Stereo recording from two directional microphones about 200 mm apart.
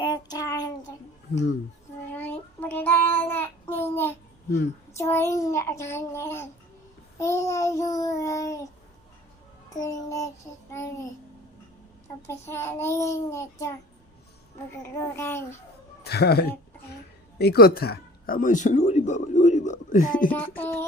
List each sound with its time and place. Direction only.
0.0 s child singing: 20° left (ahead or behind)
2.1 s child singing: 10° left (ahead or behind)
4.9 s a child's voice: 15° left (ahead or behind)
9.6 s child singing: 20° left (ahead or behind)
10.7 s a child's voice: 15° left (ahead or behind)
12.3 s a child's voice: 15° left (ahead or behind)
14.8 s a child's voice: 15° left (ahead or behind)
16.0 s speech: 55° left (ahead or behind)
17.3 s a sound: 50° left (ahead or behind)
20.6 s a child's voice: 10° left (ahead or behind)